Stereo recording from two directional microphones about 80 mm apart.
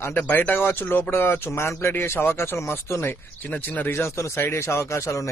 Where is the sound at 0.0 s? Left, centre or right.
Left.